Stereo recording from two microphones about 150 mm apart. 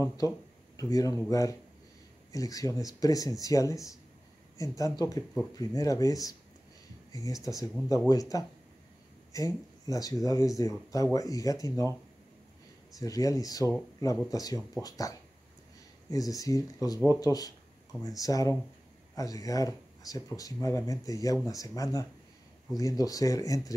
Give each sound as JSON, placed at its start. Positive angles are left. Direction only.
{"t": 0.7, "sound": "speech", "side_deg": 25}
{"t": 13.0, "sound": "speech", "side_deg": 25}